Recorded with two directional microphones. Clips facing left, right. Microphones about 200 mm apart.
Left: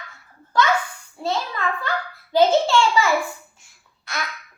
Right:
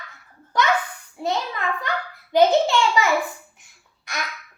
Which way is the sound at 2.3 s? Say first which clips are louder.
Even; 20° right (ahead or behind).